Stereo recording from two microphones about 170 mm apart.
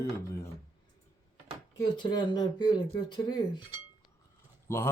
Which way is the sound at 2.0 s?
25° left (ahead or behind).